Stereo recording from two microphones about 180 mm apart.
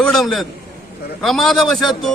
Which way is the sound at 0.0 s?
5° left (ahead or behind).